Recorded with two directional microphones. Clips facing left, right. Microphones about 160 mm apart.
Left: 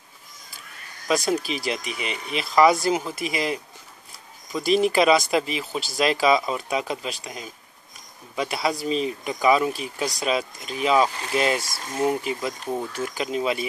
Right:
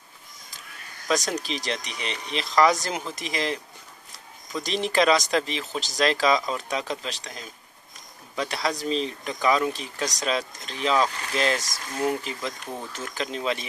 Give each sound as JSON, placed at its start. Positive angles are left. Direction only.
{"t": 1.0, "sound": "speech", "side_deg": 5}